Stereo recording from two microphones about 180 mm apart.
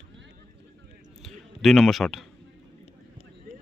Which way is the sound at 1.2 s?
Centre (ahead or behind).